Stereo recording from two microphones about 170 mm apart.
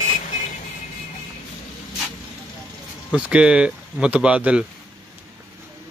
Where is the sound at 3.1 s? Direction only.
5° right (ahead or behind).